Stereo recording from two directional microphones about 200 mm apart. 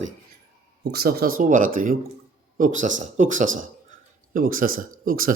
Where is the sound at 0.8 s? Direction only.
55° right (ahead or behind).